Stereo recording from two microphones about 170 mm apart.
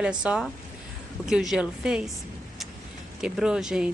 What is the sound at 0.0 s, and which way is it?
Speech, 5° right (ahead or behind).